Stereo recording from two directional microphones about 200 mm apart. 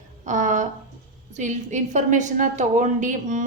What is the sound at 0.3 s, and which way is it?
A woman's voice, 40° right (ahead or behind).